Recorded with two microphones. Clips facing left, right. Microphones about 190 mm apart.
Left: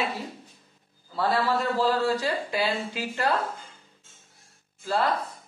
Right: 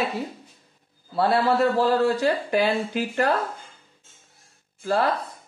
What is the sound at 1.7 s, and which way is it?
A woman's voice, 60° right (ahead or behind).